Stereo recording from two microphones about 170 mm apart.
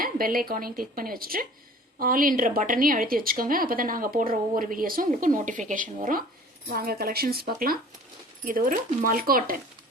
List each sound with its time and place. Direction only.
0.0 s a woman's voice: 55° right (ahead or behind)
6.7 s a woman's voice: 65° right (ahead or behind)